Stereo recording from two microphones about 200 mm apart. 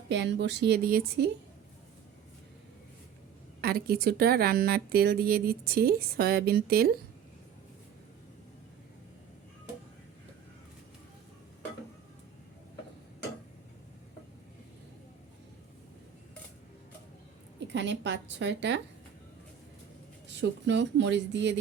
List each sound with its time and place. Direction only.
0.1 s speech: 60° right (ahead or behind)
3.6 s a woman's voice: 50° right (ahead or behind)
17.7 s a woman's voice: 60° right (ahead or behind)
20.4 s speech: 60° right (ahead or behind)